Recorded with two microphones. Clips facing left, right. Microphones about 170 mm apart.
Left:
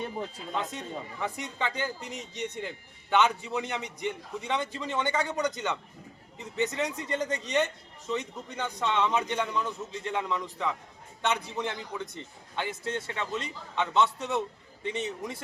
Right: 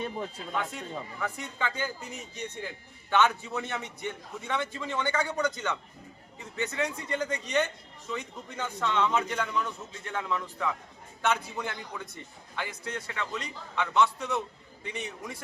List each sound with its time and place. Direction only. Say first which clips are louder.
0.2 s a man's voice: even; 20° left (ahead or behind)
6.6 s a man's voice: left 2 dB; 20° left (ahead or behind)